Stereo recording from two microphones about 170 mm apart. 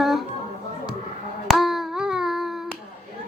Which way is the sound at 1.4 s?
Centre (ahead or behind).